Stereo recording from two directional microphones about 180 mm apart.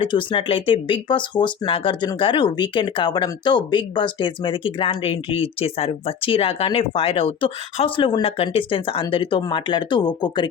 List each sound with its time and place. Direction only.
0.0 s speech: 25° left (ahead or behind)